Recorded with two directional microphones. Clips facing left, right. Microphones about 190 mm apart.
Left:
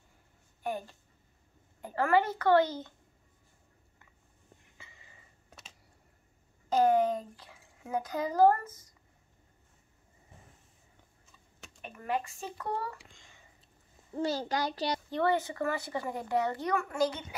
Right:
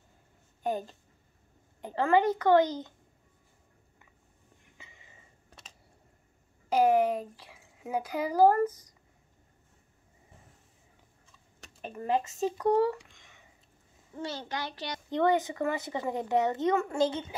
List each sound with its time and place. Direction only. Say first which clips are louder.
0.7 s a woman's voice: right 4 dB; 20° right (ahead or behind)
4.7 s a sound: right 3 dB; 15° right (ahead or behind)
6.7 s speech: right 1 dB; 10° right (ahead or behind)
11.8 s a child's voice: right 4 dB; 30° right (ahead or behind)
13.0 s a sound: left 1 dB; 30° left (ahead or behind)
14.1 s a child's voice: left 5 dB; 35° left (ahead or behind)
15.0 s a child's voice: right 5 dB; 15° right (ahead or behind)